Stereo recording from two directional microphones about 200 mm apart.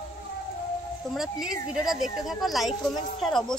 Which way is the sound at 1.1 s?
15° right (ahead or behind).